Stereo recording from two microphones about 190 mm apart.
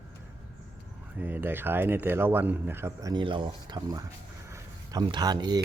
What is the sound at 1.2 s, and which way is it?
A man's voice, 10° right (ahead or behind).